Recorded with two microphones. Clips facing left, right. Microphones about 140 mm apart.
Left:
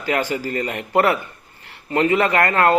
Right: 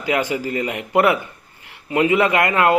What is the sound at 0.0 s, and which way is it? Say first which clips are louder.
A man's voice: right 1 dB; 15° right (ahead or behind).